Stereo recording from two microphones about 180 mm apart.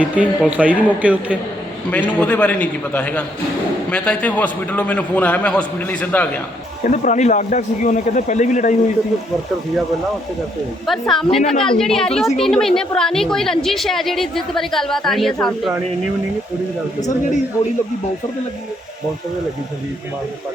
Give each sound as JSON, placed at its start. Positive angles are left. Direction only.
{"t": 0.0, "sound": "speech", "side_deg": -5}
{"t": 1.9, "sound": "a man's voice", "side_deg": 10}
{"t": 6.8, "sound": "speech", "side_deg": 45}
{"t": 10.8, "sound": "a woman's voice", "side_deg": 0}